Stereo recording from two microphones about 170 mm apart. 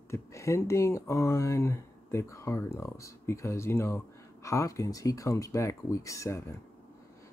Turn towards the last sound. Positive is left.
turn(degrees=20)  # may be behind; listen again after turning